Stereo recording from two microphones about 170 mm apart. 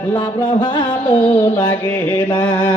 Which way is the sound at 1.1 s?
10° left (ahead or behind).